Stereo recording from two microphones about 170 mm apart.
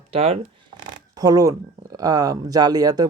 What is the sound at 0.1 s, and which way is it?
Speech, 35° right (ahead or behind).